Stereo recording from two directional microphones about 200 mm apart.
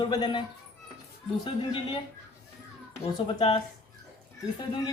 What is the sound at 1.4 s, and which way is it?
Speech, 25° left (ahead or behind).